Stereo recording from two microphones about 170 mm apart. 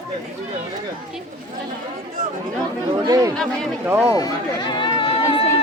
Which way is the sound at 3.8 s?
10° right (ahead or behind).